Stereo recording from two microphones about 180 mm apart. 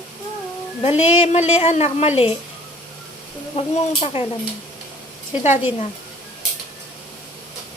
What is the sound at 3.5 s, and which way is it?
Speech, 35° left (ahead or behind).